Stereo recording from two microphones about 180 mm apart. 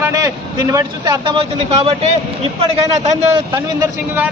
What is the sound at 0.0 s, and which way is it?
Vehicle, 20° right (ahead or behind).